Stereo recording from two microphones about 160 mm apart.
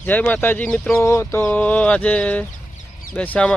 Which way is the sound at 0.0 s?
10° left (ahead or behind).